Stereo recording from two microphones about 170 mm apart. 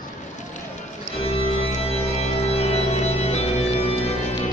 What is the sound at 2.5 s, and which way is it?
Music, 35° left (ahead or behind).